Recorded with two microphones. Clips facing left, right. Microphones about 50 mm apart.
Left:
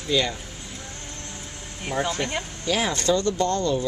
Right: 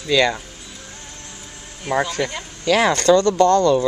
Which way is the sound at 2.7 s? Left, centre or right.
Right.